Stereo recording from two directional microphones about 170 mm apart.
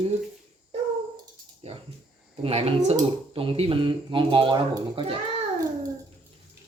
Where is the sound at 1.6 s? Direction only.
35° right (ahead or behind).